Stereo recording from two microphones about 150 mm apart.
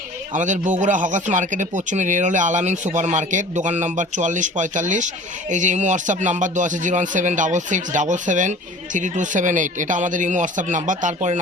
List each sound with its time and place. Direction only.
0.3 s speech: 55° right (ahead or behind)